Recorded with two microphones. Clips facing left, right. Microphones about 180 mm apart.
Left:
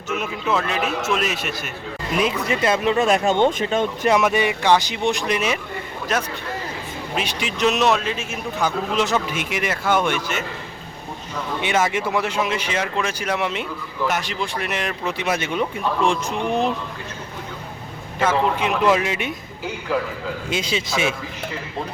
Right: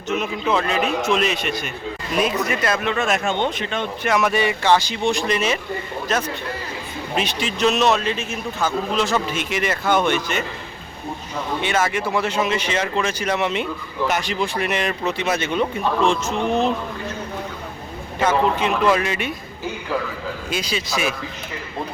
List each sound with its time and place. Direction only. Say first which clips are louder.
0.1 s a man's voice: right 2 dB; 5° left (ahead or behind)
2.1 s speech: even; 25° left (ahead or behind); by 4.1 s 40° left (ahead or behind)
4.1 s a man's voice: right 1 dB; 15° left (ahead or behind)
11.6 s a man's voice: left 1 dB; 15° left (ahead or behind)
18.3 s a man's voice: right 1 dB; 15° left (ahead or behind)
20.5 s speech: left 1 dB; 25° left (ahead or behind)